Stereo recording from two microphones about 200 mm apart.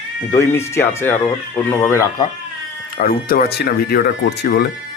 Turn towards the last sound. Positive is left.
turn(degrees=50)  # may be behind; listen again after turning